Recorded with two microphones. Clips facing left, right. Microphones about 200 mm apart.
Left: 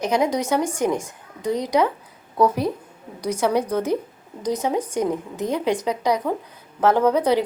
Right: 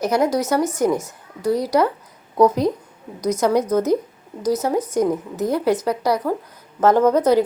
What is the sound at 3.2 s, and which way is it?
Speech, 10° left (ahead or behind).